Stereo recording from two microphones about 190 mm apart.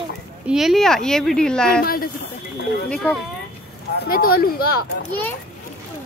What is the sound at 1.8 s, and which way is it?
Speech, 50° left (ahead or behind).